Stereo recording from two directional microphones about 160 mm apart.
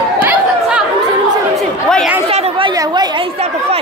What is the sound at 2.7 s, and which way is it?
Speech, 25° right (ahead or behind).